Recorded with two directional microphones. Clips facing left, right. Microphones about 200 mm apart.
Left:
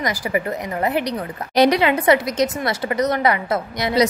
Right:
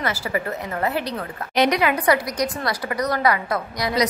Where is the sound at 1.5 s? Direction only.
35° left (ahead or behind).